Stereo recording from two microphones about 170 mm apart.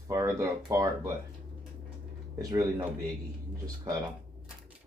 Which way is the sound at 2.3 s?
20° right (ahead or behind).